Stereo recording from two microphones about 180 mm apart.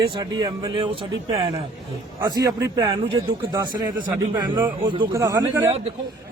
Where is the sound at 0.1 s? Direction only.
20° right (ahead or behind).